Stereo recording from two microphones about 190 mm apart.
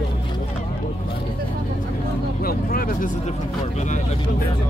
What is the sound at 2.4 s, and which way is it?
Speech, 50° left (ahead or behind).